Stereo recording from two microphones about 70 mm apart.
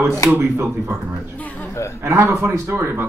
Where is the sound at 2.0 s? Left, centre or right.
Right.